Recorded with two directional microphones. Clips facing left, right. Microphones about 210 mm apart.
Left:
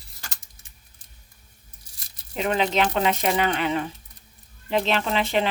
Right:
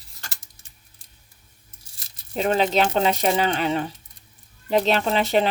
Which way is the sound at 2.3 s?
35° right (ahead or behind).